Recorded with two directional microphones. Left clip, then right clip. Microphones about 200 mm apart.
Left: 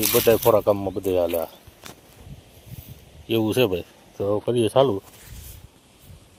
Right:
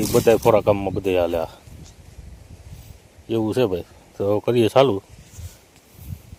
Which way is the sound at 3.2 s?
5° right (ahead or behind).